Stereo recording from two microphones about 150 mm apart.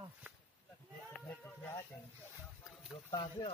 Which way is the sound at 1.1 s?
10° left (ahead or behind).